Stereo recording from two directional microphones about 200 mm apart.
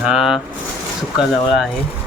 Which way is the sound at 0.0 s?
5° right (ahead or behind).